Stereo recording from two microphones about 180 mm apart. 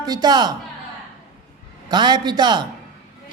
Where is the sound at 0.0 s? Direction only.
20° right (ahead or behind).